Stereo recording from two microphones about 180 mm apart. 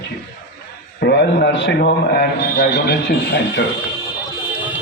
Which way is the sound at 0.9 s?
70° left (ahead or behind).